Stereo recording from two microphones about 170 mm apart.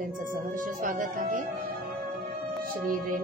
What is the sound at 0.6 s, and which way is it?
Speech, 50° right (ahead or behind).